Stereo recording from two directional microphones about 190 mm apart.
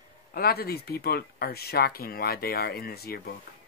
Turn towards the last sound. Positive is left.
turn(degrees=55)  # may be behind; listen again after turning